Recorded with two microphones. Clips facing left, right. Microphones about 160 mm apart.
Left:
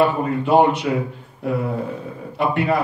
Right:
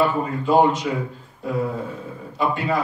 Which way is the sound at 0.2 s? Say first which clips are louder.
Left 2 dB; 60° left (ahead or behind).